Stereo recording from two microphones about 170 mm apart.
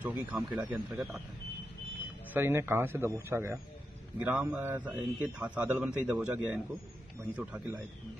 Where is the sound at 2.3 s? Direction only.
15° right (ahead or behind).